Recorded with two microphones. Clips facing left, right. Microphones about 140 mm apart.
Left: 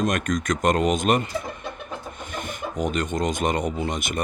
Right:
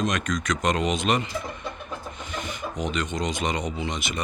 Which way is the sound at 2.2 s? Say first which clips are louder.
Left 1 dB; 50° left (ahead or behind).